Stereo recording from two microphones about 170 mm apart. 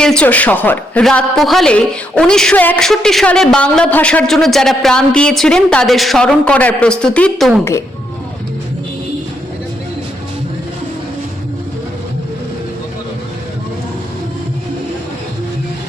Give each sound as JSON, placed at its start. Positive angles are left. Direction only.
{"t": 0.0, "sound": "a woman's voice", "side_deg": 5}